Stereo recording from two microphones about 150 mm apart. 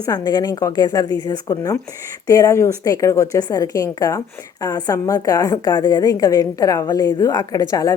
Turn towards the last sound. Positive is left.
turn(degrees=25)  # may be behind; listen again after turning